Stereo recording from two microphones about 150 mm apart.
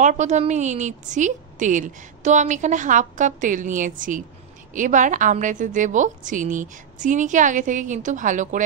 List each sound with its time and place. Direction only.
0.0 s a woman's voice: 55° right (ahead or behind)